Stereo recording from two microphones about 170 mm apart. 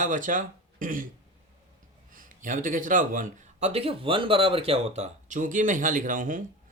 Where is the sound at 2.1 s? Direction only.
50° right (ahead or behind).